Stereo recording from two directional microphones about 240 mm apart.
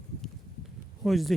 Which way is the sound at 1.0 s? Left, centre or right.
Centre.